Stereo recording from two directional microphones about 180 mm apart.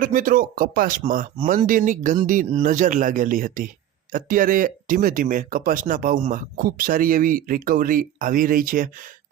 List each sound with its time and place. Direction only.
0.0 s speech: 50° right (ahead or behind)